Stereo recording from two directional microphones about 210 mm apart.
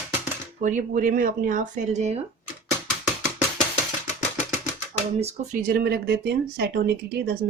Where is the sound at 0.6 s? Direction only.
40° right (ahead or behind).